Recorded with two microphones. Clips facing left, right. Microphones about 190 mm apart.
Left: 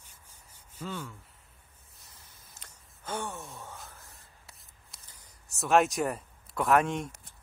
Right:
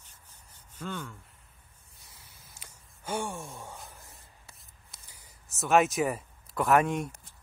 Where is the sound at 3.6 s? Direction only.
15° right (ahead or behind).